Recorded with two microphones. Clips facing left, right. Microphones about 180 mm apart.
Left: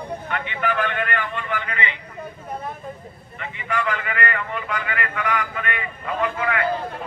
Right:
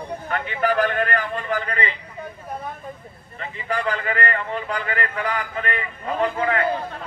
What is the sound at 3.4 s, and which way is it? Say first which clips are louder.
A man's voice: even; 35° right (ahead or behind).